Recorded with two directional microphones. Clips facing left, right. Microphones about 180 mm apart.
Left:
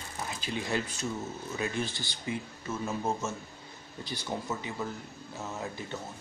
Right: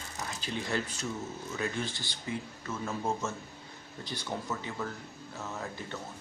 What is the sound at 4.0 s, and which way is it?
Speech, 10° left (ahead or behind).